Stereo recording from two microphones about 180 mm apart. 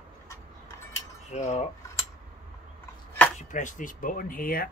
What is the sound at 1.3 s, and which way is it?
Speech, 40° left (ahead or behind).